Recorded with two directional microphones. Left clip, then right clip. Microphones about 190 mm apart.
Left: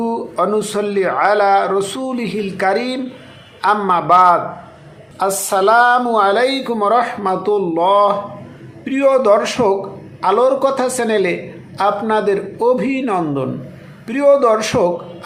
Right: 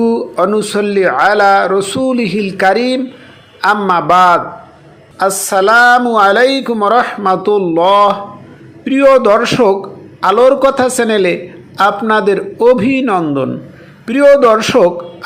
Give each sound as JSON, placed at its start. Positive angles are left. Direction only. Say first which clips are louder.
{"t": 0.0, "sound": "a woman's voice", "louder": "right 5 dB", "side_deg": -20}